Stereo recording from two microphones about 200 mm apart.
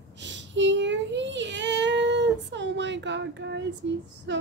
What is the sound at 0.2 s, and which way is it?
Child singing, 65° right (ahead or behind).